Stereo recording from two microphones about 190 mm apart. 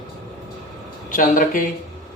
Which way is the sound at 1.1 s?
45° left (ahead or behind).